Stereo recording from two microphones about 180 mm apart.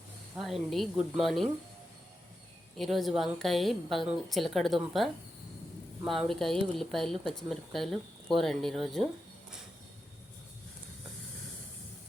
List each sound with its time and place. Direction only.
0.3 s speech: centre (ahead or behind)
2.7 s speech: centre (ahead or behind)
6.1 s speech: centre (ahead or behind)